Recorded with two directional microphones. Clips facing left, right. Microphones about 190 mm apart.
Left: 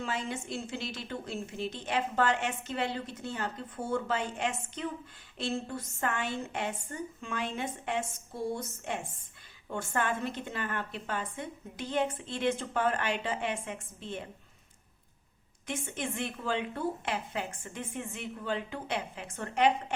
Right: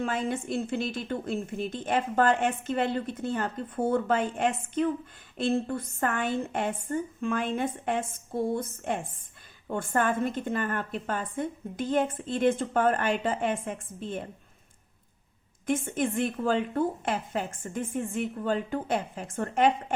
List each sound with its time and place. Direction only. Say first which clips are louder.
0.0 s a woman's voice: right 6 dB; 55° right (ahead or behind)
15.6 s a woman's voice: right 9 dB; 50° right (ahead or behind)